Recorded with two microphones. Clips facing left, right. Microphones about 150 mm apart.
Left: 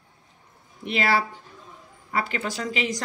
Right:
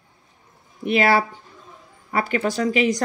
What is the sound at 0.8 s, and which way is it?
Speech, 50° right (ahead or behind).